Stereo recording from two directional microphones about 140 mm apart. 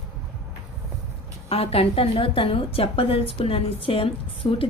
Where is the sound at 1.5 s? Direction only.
45° left (ahead or behind).